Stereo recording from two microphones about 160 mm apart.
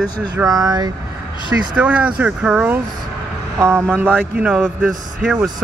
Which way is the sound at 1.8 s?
10° right (ahead or behind).